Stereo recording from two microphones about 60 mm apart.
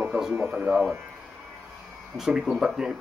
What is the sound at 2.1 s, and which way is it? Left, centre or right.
Speech, centre.